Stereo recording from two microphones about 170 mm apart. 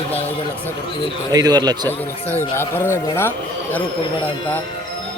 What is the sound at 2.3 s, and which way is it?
Speech, 15° left (ahead or behind).